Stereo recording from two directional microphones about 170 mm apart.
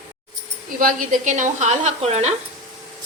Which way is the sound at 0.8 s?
55° right (ahead or behind).